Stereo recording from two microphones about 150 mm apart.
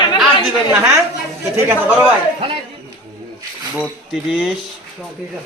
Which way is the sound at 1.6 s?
15° right (ahead or behind).